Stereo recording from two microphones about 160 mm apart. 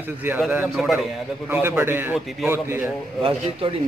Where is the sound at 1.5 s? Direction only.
15° right (ahead or behind).